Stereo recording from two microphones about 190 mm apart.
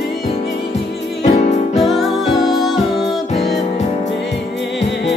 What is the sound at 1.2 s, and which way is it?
Music, 35° left (ahead or behind).